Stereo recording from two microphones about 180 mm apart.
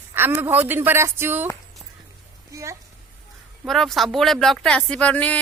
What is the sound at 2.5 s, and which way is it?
Speech, 15° right (ahead or behind).